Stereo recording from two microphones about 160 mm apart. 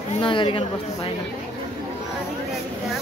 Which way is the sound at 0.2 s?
30° left (ahead or behind).